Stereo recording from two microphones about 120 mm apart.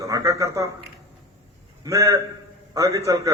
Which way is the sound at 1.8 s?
25° right (ahead or behind).